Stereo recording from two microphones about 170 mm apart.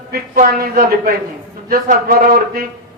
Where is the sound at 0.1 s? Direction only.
60° right (ahead or behind).